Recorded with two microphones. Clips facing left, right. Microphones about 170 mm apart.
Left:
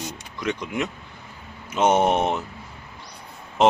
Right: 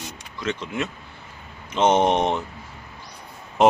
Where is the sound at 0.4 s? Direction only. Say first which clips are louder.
Left 1 dB; 15° left (ahead or behind).